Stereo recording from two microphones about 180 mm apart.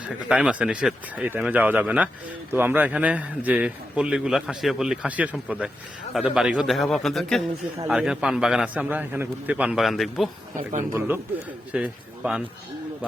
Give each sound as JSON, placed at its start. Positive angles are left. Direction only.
{"t": 0.0, "sound": "a man's voice", "side_deg": -5}
{"t": 10.5, "sound": "speech", "side_deg": -45}
{"t": 11.7, "sound": "a man's voice", "side_deg": -5}